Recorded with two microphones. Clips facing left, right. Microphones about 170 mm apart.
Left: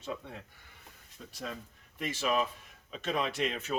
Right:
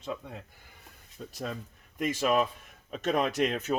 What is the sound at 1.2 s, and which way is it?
Speech, 35° right (ahead or behind).